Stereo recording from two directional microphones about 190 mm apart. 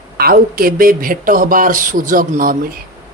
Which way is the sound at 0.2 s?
50° right (ahead or behind).